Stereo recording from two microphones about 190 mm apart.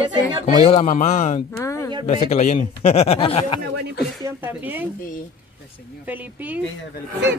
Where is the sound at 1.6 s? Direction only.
15° left (ahead or behind).